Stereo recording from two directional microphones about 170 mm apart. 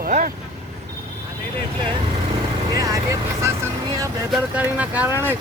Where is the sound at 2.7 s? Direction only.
20° right (ahead or behind).